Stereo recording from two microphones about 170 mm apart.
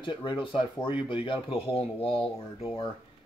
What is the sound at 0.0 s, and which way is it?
Speech, 30° left (ahead or behind).